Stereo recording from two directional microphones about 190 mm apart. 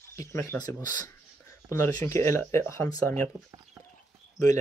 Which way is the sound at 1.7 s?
15° left (ahead or behind).